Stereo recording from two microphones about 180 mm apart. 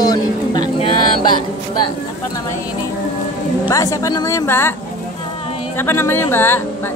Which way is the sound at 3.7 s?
20° left (ahead or behind).